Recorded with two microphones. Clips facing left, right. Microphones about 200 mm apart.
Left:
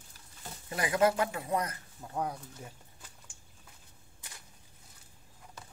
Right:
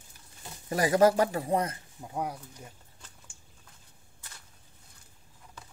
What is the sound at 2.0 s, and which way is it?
Speech, 10° right (ahead or behind).